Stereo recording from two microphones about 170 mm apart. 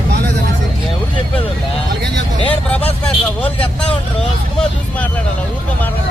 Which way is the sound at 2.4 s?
10° left (ahead or behind).